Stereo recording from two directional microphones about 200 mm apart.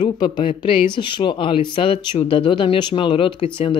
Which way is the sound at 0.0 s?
25° left (ahead or behind).